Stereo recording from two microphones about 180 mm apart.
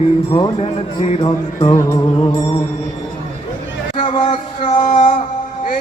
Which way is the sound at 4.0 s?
30° left (ahead or behind).